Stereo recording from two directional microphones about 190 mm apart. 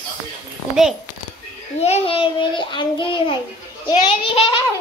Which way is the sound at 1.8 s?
30° left (ahead or behind).